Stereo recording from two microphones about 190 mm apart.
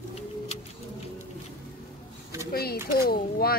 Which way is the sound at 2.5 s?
55° left (ahead or behind).